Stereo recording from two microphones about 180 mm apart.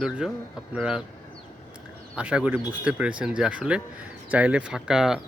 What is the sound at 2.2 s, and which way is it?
Speech, 5° right (ahead or behind).